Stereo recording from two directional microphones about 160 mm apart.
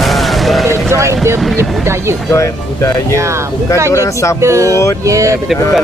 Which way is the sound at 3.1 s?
15° right (ahead or behind).